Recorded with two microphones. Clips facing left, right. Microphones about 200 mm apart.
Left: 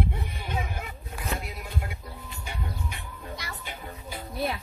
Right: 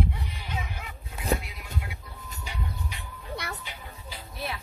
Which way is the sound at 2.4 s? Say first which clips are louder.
Left 1 dB; 55° left (ahead or behind).